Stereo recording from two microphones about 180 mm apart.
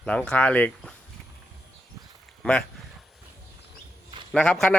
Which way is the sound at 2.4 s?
10° left (ahead or behind).